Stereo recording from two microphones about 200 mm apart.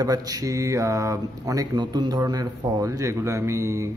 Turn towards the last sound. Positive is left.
turn(degrees=-15)  # may be behind; listen again after turning